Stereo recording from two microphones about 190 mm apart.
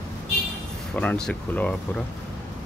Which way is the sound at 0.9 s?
5° left (ahead or behind).